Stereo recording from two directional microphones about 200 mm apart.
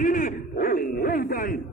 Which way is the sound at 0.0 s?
40° left (ahead or behind).